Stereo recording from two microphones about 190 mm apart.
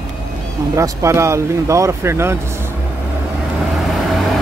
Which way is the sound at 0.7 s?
15° right (ahead or behind).